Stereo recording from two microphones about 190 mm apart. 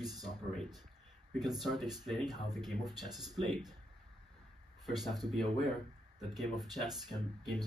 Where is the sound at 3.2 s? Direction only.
Centre (ahead or behind).